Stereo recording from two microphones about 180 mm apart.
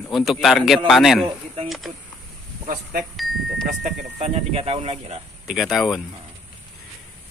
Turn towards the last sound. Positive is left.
turn(degrees=0)  # may be behind; listen again after turning